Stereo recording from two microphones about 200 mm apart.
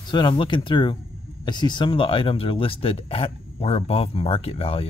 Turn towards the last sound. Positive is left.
turn(degrees=30)  # may be behind; listen again after turning